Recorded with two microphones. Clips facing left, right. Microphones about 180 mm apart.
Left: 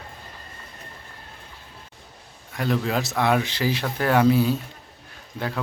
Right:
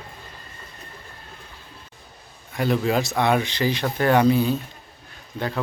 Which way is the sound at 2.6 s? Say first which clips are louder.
Right 3 dB; 5° right (ahead or behind).